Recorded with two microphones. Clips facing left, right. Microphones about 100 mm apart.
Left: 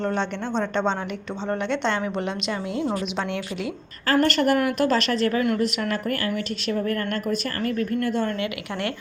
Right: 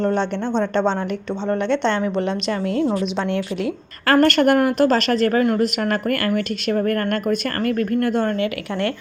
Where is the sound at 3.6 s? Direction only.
60° right (ahead or behind).